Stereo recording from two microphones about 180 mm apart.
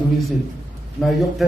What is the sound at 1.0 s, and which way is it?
Speech, centre (ahead or behind).